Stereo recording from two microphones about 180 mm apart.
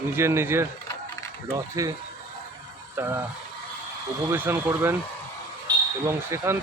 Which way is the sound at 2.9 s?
10° right (ahead or behind).